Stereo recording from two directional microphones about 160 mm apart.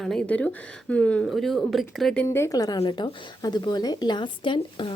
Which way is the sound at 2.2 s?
15° left (ahead or behind).